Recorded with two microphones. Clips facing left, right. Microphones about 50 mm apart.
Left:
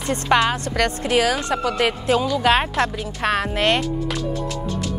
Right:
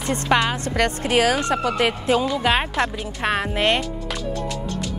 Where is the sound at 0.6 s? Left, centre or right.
Right.